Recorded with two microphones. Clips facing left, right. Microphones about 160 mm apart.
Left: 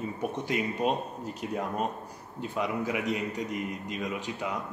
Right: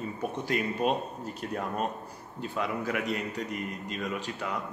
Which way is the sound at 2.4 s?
20° left (ahead or behind).